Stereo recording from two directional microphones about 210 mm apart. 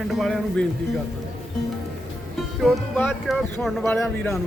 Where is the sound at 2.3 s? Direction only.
Centre (ahead or behind).